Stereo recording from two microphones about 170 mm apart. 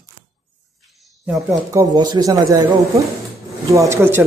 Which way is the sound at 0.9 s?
Centre (ahead or behind).